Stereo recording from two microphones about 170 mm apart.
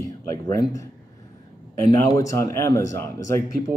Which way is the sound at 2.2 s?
20° left (ahead or behind).